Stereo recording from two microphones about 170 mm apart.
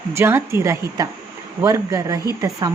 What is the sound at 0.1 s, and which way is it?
Speech, 15° right (ahead or behind).